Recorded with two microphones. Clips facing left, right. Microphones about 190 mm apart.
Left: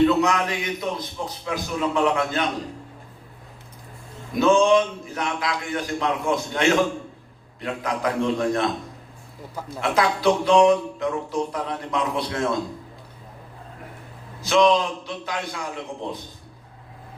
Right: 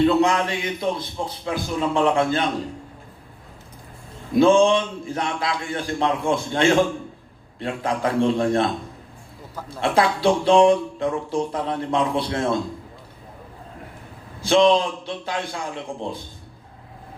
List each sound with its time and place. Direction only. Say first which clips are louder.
0.0 s speech: right 1 dB; 30° right (ahead or behind)
4.4 s a man's voice: right 2 dB; 30° right (ahead or behind)
14.4 s speech: right 2 dB; 30° right (ahead or behind)